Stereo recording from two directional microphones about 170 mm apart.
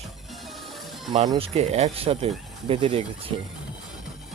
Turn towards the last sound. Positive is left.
turn(degrees=-30)  # may be behind; listen again after turning